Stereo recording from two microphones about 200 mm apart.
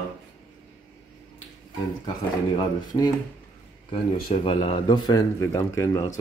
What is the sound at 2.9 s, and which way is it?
Speech, 20° left (ahead or behind).